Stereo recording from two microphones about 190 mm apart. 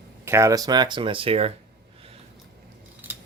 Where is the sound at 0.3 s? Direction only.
15° right (ahead or behind); by 1.5 s 30° right (ahead or behind).